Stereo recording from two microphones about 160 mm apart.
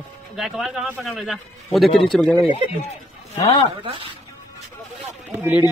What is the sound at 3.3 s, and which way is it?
Speech, 25° left (ahead or behind).